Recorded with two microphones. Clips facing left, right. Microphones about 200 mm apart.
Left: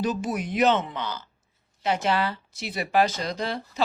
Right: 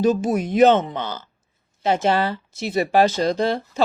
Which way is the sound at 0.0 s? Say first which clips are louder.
Right 8 dB; 45° right (ahead or behind).